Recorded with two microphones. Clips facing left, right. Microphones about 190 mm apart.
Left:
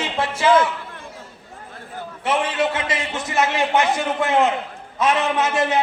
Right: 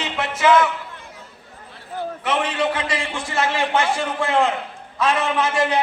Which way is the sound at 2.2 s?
25° left (ahead or behind).